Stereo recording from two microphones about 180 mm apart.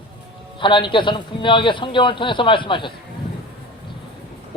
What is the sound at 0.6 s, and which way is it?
Speech, 25° left (ahead or behind).